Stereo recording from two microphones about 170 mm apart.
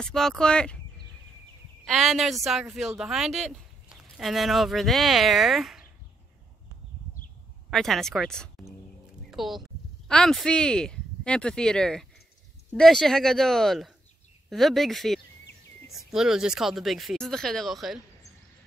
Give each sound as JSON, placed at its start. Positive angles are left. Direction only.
{"t": 0.0, "sound": "speech", "side_deg": 0}
{"t": 1.9, "sound": "speech", "side_deg": 0}
{"t": 7.7, "sound": "speech", "side_deg": 0}